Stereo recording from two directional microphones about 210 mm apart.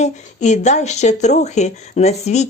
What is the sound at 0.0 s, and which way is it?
Speech, 35° left (ahead or behind).